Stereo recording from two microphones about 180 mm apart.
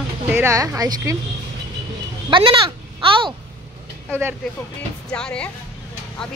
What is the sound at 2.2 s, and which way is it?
A child's voice, 25° right (ahead or behind).